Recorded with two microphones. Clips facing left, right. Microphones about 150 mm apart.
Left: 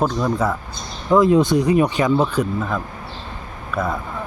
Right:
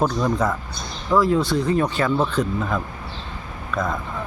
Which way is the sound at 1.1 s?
20° left (ahead or behind).